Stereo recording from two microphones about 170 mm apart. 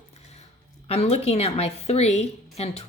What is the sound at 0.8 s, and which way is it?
A woman's voice, 35° left (ahead or behind).